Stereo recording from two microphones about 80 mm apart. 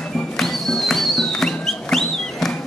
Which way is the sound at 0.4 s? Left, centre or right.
Centre.